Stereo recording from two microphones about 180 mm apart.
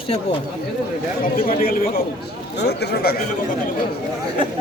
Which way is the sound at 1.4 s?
55° left (ahead or behind).